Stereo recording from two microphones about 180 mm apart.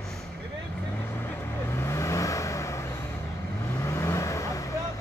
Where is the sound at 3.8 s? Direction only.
15° left (ahead or behind).